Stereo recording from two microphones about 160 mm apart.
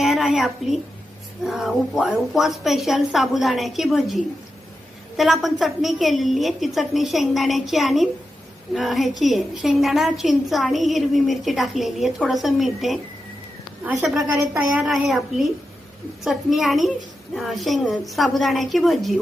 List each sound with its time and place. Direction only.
0.0 s a woman's voice: 5° right (ahead or behind)
14.0 s a woman's voice: centre (ahead or behind)